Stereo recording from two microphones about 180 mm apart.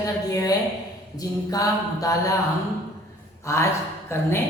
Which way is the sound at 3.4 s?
15° left (ahead or behind).